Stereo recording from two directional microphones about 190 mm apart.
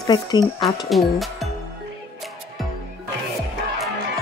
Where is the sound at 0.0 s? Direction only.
20° left (ahead or behind).